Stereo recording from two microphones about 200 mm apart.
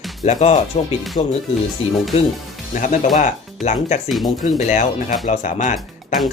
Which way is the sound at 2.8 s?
35° left (ahead or behind).